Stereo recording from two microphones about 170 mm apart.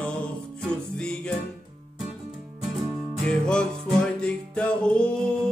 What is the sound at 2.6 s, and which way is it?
Music, centre (ahead or behind).